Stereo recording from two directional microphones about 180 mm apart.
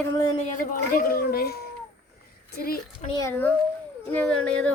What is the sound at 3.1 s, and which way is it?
Speech, 15° left (ahead or behind).